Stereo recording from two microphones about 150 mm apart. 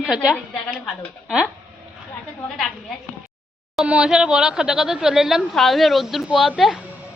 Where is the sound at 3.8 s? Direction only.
5° right (ahead or behind).